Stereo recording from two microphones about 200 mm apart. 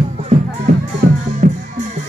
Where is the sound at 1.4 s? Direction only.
45° right (ahead or behind).